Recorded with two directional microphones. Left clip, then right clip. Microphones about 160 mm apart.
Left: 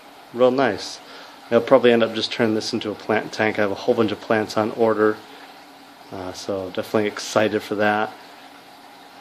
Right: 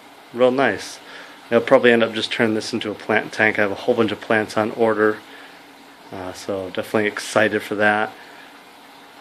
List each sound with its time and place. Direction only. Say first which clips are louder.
0.4 s a man's voice: right 1 dB; 5° left (ahead or behind)
6.1 s a man's voice: right 1 dB; centre (ahead or behind)